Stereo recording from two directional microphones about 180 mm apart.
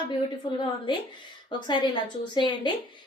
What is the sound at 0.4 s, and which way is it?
Speech, 25° left (ahead or behind).